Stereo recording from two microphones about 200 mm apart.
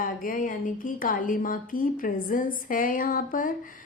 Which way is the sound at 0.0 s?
45° left (ahead or behind).